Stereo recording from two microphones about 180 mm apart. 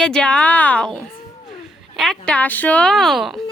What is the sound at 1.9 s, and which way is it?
A woman's voice, centre (ahead or behind).